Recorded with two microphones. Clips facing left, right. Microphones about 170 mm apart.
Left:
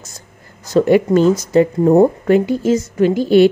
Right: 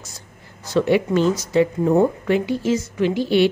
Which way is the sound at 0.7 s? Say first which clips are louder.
Left 6 dB; 45° left (ahead or behind).